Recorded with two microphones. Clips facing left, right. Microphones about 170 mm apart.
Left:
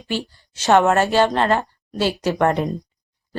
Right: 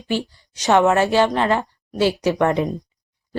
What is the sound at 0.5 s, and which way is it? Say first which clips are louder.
Speech: even; 15° right (ahead or behind).